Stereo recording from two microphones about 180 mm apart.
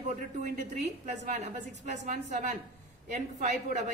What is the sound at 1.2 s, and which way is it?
A woman's voice, 40° right (ahead or behind).